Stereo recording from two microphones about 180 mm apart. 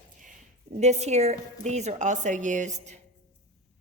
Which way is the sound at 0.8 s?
40° right (ahead or behind).